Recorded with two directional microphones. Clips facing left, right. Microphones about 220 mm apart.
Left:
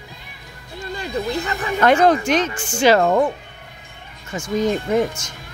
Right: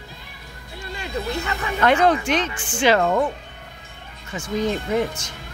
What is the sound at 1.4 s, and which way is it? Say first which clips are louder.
Speech: left 3 dB; 40° left (ahead or behind).